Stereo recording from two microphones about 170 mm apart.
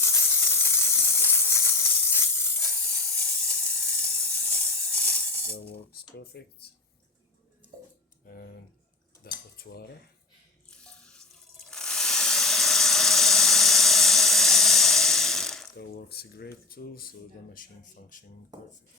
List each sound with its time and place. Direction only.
0.0 s steam: 15° left (ahead or behind)
6.1 s speech: 70° left (ahead or behind)
8.3 s speech: 60° left (ahead or behind)
10.7 s water: 5° left (ahead or behind)
15.8 s speech: 70° left (ahead or behind); by 18.3 s 55° left (ahead or behind)